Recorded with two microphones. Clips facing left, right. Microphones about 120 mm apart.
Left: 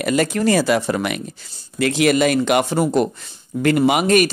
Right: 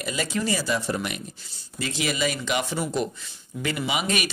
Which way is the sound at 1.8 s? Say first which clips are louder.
Left 11 dB; 65° left (ahead or behind).